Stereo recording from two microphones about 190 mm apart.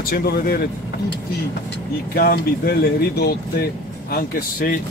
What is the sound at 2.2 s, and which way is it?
Speech, 55° left (ahead or behind).